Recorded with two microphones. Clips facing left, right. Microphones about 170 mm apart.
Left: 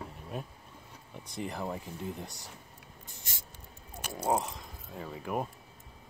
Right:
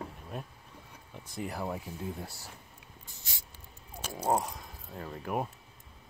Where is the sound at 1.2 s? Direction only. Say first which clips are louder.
Even; 5° right (ahead or behind).